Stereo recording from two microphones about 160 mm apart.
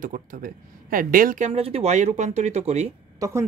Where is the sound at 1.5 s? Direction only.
40° right (ahead or behind).